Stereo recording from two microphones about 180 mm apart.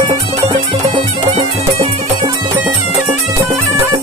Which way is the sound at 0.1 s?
30° right (ahead or behind).